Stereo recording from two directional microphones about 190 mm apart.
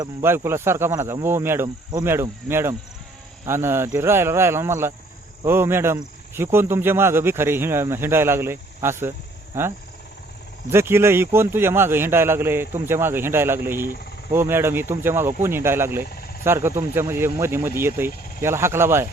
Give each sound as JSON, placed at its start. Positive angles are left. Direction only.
{"t": 0.0, "sound": "speech", "side_deg": -10}
{"t": 10.7, "sound": "speech", "side_deg": -15}